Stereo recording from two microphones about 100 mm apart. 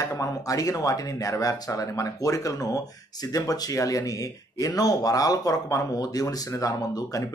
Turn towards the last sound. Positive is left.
turn(degrees=35)  # may be behind; listen again after turning